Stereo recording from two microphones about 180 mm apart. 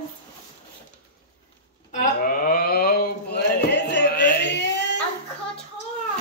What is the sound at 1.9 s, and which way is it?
Mantra, 50° left (ahead or behind).